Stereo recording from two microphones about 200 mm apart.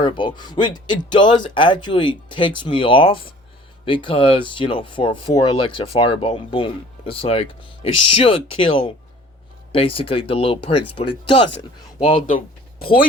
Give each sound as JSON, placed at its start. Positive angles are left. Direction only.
{"t": 0.0, "sound": "speech", "side_deg": 25}